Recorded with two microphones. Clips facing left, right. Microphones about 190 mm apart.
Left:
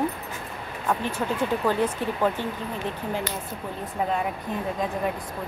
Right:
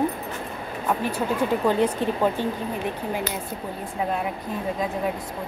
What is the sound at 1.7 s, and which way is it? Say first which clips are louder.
Speech: right 4 dB; 15° right (ahead or behind).